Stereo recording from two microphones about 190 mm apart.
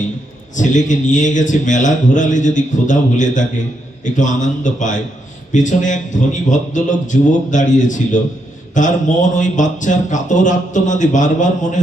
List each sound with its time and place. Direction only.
0.5 s speech: 40° left (ahead or behind)